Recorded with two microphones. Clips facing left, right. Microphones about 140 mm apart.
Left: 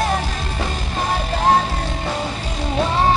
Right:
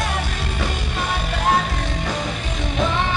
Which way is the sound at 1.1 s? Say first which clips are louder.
Left 4 dB; 35° left (ahead or behind).